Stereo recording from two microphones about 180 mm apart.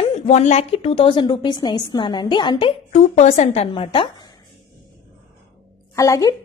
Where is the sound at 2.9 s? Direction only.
40° left (ahead or behind).